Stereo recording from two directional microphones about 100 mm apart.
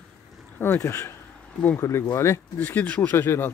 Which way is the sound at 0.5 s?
20° left (ahead or behind).